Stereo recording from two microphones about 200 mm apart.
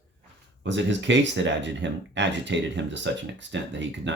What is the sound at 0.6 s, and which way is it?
Speech, 65° right (ahead or behind).